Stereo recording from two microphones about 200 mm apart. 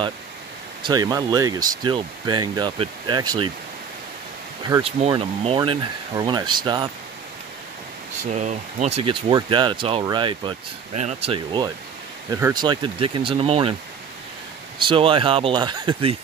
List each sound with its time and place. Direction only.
0.8 s speech: 20° right (ahead or behind)
4.8 s speech: 30° right (ahead or behind)
8.2 s speech: 35° right (ahead or behind)
14.9 s speech: 25° right (ahead or behind)